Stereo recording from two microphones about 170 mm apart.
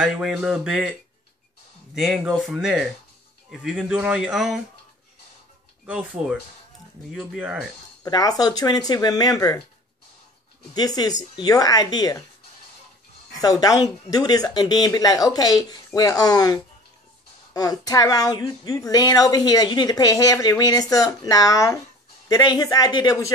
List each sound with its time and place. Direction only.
0.0 s speech: centre (ahead or behind)
2.0 s speech: 5° right (ahead or behind)
5.9 s speech: 5° right (ahead or behind)
8.0 s speech: 20° left (ahead or behind)
10.7 s speech: 25° left (ahead or behind)
13.4 s speech: 20° left (ahead or behind)